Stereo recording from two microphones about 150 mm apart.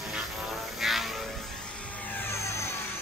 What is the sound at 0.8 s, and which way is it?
Vehicle, centre (ahead or behind).